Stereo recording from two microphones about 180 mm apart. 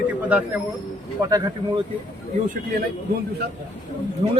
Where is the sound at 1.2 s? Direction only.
20° right (ahead or behind).